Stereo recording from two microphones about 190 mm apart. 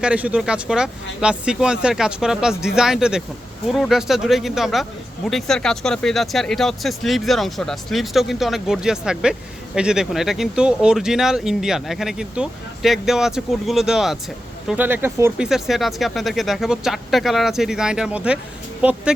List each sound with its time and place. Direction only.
0.0 s speech: 5° right (ahead or behind)